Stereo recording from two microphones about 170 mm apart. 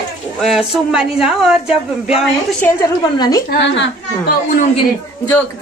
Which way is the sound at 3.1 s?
20° left (ahead or behind).